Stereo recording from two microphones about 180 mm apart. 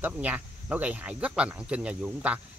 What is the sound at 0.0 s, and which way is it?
Speech, 10° right (ahead or behind).